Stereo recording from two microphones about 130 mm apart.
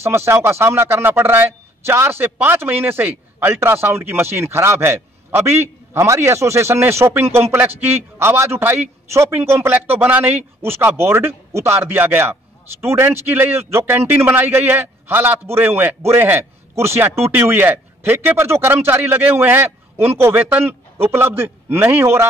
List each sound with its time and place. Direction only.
0.0 s speech: 20° right (ahead or behind)